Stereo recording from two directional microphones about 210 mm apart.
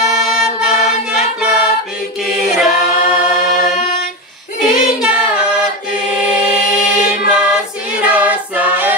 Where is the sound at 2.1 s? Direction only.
Centre (ahead or behind).